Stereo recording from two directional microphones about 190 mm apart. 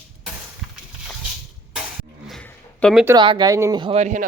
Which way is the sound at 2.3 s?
5° left (ahead or behind).